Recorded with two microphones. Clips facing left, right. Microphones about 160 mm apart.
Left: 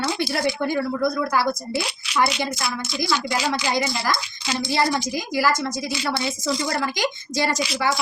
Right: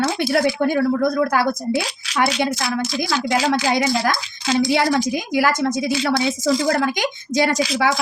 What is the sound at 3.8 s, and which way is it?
A woman's voice, 90° right.